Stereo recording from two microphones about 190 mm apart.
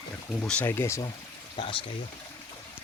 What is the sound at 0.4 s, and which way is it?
Speech, 10° left (ahead or behind).